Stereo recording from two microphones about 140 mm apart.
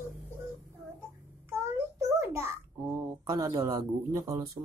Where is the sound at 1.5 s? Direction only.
20° right (ahead or behind).